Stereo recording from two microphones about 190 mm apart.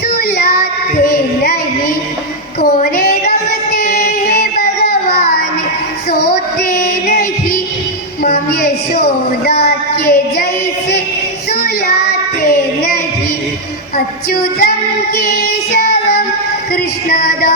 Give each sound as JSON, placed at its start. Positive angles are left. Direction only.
{"t": 0.2, "sound": "child singing", "side_deg": 55}
{"t": 1.1, "sound": "a sound", "side_deg": 50}
{"t": 2.6, "sound": "female singing", "side_deg": 50}
{"t": 6.1, "sound": "music", "side_deg": 50}
{"t": 8.2, "sound": "a sound", "side_deg": 50}
{"t": 12.4, "sound": "child singing", "side_deg": 50}
{"t": 13.9, "sound": "music", "side_deg": 50}
{"t": 15.1, "sound": "child singing", "side_deg": 50}
{"t": 16.7, "sound": "music", "side_deg": 50}